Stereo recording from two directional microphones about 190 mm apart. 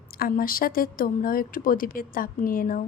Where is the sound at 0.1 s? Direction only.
50° left (ahead or behind).